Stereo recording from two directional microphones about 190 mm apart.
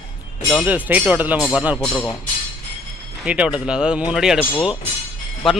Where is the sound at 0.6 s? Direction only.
10° right (ahead or behind).